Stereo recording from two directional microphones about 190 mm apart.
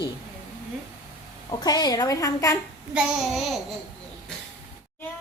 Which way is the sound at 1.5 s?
20° left (ahead or behind).